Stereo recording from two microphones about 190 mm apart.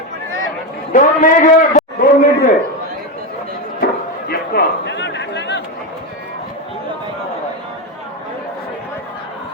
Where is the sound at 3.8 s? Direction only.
55° left (ahead or behind).